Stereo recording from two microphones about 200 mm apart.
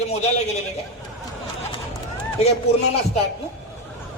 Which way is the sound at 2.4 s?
30° left (ahead or behind).